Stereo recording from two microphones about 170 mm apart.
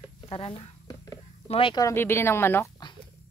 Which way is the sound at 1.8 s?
15° left (ahead or behind).